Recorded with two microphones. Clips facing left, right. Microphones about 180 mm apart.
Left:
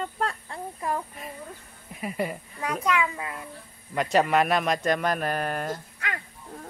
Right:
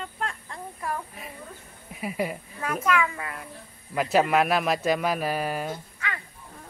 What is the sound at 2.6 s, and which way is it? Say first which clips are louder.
Speech: right 1 dB; 15° left (ahead or behind).